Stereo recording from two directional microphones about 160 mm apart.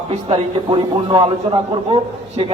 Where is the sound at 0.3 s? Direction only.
35° right (ahead or behind).